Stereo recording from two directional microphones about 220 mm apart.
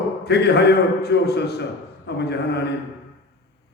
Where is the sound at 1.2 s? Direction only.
50° left (ahead or behind).